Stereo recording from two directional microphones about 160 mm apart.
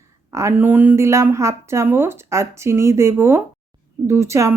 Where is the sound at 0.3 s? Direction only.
20° right (ahead or behind).